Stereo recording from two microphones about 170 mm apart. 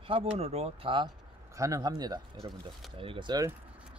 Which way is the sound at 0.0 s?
35° right (ahead or behind).